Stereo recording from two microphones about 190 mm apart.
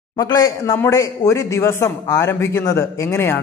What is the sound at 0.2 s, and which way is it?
A man's voice, 20° left (ahead or behind).